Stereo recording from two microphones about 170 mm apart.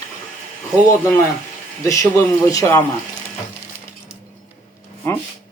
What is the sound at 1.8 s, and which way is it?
Speech, 20° left (ahead or behind).